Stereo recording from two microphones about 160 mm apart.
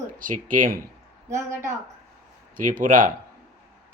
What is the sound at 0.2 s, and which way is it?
Speech, 55° right (ahead or behind).